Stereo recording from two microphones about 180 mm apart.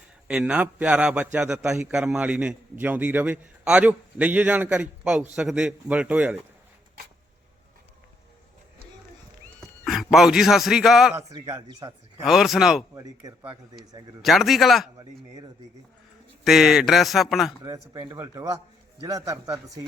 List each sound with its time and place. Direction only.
0.3 s a man's voice: 5° right (ahead or behind)
9.6 s a man's voice: centre (ahead or behind)
11.3 s speech: 20° right (ahead or behind)
12.2 s a man's voice: centre (ahead or behind)
12.9 s a man's voice: 15° right (ahead or behind)
14.2 s a man's voice: centre (ahead or behind)
16.4 s a man's voice: centre (ahead or behind)
17.6 s a man's voice: 20° right (ahead or behind)